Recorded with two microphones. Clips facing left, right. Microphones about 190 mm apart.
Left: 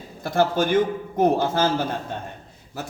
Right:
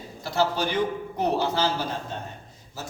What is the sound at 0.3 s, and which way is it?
A man's voice, 50° left (ahead or behind).